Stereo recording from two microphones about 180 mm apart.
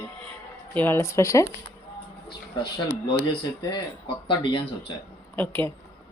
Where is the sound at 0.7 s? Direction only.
10° left (ahead or behind).